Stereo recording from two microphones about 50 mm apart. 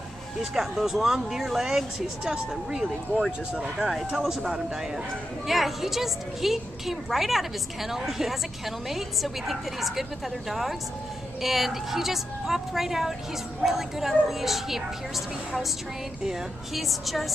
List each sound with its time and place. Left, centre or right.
0.4 s speech: centre
3.3 s speech: centre
5.5 s a woman's voice: centre
11.4 s a woman's voice: centre
16.3 s a woman's voice: centre